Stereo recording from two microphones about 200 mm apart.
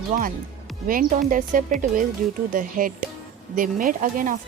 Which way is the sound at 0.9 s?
45° right (ahead or behind).